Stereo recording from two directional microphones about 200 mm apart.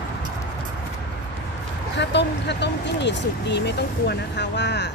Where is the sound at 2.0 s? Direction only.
60° left (ahead or behind).